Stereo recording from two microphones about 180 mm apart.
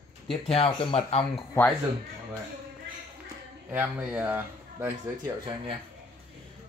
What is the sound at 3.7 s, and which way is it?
A man's voice, 10° right (ahead or behind).